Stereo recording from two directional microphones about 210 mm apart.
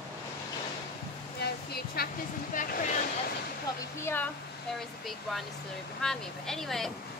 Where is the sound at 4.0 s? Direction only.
10° left (ahead or behind).